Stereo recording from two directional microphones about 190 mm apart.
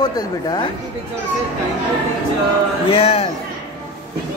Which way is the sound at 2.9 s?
30° left (ahead or behind).